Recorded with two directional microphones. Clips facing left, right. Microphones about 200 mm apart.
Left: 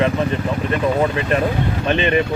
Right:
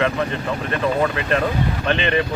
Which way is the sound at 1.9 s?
15° left (ahead or behind).